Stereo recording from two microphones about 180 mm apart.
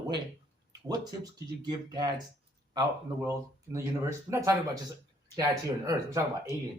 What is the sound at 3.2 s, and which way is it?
Speech, 15° right (ahead or behind).